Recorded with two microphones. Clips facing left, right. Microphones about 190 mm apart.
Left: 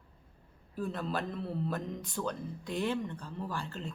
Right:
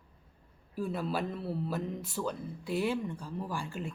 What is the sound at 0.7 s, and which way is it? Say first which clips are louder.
Speech: right 2 dB; 10° right (ahead or behind).